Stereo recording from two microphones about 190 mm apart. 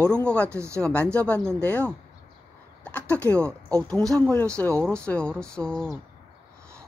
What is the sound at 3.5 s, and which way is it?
Speech, 20° right (ahead or behind).